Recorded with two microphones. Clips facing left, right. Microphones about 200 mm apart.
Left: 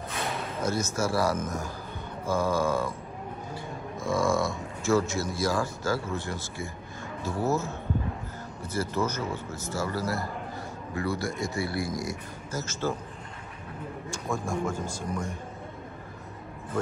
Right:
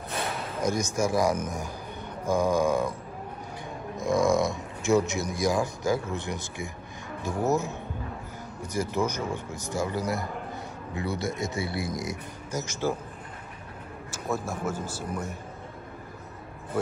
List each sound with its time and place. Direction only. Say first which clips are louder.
0.6 s a man's voice: right 2 dB; 15° right (ahead or behind)
3.9 s a man's voice: right 3 dB; 20° right (ahead or behind)
14.1 s a man's voice: even; 5° right (ahead or behind)